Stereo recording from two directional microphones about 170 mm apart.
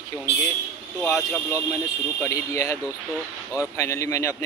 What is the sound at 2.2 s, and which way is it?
Speech, 15° left (ahead or behind).